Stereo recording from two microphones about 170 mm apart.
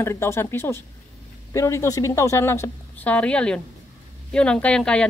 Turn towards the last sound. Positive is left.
turn(degrees=5)  # may be behind; listen again after turning